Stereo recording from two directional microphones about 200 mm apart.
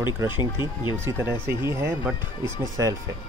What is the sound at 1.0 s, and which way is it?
Speech, 10° right (ahead or behind).